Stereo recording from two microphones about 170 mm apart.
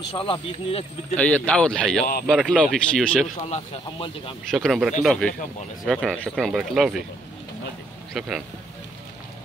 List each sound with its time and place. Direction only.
0.1 s speech: 30° left (ahead or behind)
1.1 s speech: 10° left (ahead or behind)
3.4 s speech: 35° left (ahead or behind)
4.5 s speech: centre (ahead or behind)
8.1 s speech: centre (ahead or behind)